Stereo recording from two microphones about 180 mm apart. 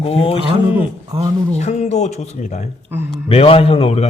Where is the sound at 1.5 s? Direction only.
40° left (ahead or behind).